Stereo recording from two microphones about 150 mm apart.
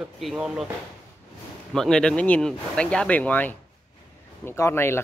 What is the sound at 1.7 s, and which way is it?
Speech, 5° left (ahead or behind).